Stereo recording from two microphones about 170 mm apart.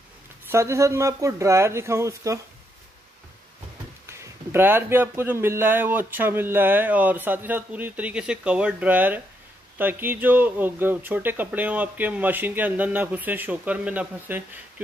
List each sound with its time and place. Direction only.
0.5 s a man's voice: 15° right (ahead or behind)
4.0 s a man's voice: 15° right (ahead or behind)